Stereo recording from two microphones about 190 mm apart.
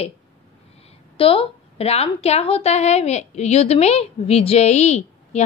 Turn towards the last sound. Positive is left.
turn(degrees=35)  # may be behind; listen again after turning